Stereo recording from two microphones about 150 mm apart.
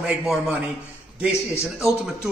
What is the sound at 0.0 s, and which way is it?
Speech, 5° right (ahead or behind).